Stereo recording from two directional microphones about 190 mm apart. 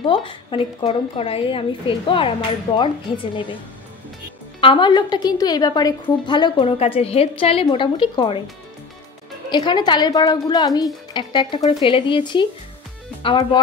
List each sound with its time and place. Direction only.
0.1 s a woman's voice: 25° left (ahead or behind)
4.6 s a woman's voice: 25° left (ahead or behind)
9.5 s a woman's voice: 25° left (ahead or behind)